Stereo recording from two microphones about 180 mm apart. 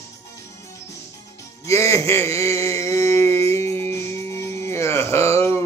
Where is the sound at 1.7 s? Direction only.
15° left (ahead or behind).